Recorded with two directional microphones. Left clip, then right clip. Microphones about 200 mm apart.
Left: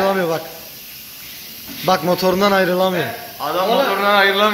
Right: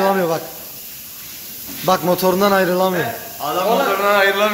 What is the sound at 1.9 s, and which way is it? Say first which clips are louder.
A man's voice: even; 5° right (ahead or behind).